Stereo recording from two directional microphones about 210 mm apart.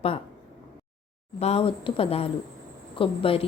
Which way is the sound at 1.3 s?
30° left (ahead or behind).